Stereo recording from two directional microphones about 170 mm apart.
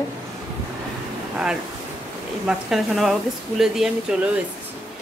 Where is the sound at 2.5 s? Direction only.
Centre (ahead or behind).